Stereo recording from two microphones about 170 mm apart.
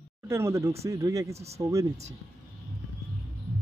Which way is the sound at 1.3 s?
40° right (ahead or behind).